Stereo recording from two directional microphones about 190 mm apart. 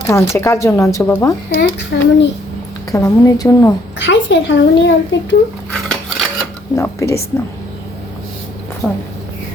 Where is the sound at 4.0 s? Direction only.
70° left (ahead or behind).